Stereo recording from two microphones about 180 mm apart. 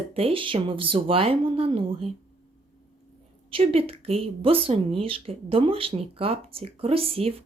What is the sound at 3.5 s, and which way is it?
Speech, 30° right (ahead or behind).